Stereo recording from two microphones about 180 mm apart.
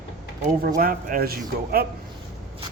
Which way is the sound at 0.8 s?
50° right (ahead or behind).